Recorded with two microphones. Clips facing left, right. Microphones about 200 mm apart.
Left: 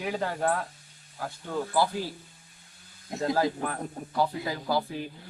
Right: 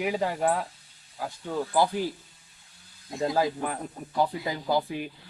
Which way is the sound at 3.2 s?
20° right (ahead or behind).